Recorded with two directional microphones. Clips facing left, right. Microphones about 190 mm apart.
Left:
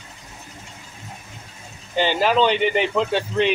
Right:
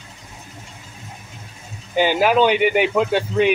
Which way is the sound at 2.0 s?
10° right (ahead or behind).